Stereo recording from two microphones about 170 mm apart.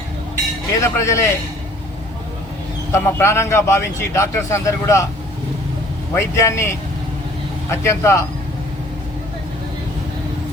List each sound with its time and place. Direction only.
0.7 s a man's voice: 20° left (ahead or behind)
2.9 s a man's voice: 15° left (ahead or behind)
6.1 s a man's voice: 15° left (ahead or behind)
7.7 s a man's voice: 15° left (ahead or behind)